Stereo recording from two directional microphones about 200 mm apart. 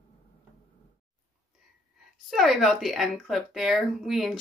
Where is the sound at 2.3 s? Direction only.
Centre (ahead or behind).